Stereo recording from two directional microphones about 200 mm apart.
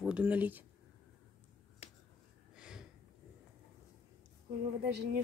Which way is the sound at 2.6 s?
5° right (ahead or behind).